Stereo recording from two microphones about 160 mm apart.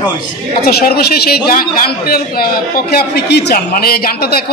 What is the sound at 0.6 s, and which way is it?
A man's voice, 75° left (ahead or behind).